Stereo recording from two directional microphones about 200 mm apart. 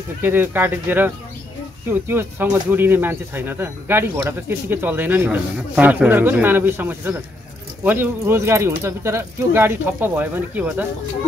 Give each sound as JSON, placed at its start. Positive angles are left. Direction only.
{"t": 0.2, "sound": "speech", "side_deg": -10}